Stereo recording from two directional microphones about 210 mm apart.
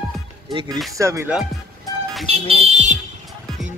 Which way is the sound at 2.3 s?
30° right (ahead or behind).